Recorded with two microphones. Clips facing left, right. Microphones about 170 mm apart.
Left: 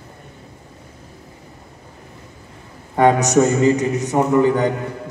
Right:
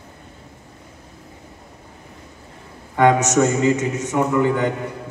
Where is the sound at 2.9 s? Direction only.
35° left (ahead or behind).